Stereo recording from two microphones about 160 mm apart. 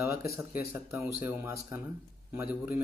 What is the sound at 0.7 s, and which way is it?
A man's voice, 15° right (ahead or behind).